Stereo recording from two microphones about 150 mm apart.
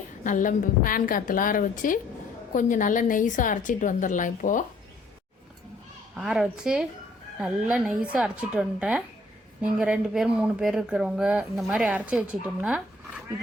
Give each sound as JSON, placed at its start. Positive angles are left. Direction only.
{"t": 0.3, "sound": "a woman's voice", "side_deg": 60}
{"t": 6.1, "sound": "a woman's voice", "side_deg": -5}